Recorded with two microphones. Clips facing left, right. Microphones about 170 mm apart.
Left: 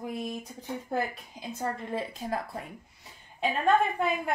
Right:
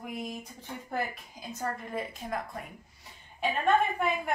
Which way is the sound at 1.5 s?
30° left (ahead or behind).